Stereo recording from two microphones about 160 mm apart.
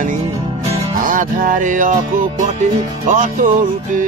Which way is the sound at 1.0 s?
55° right (ahead or behind).